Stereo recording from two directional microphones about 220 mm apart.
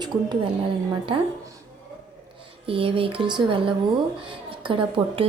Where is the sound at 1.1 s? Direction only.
20° right (ahead or behind).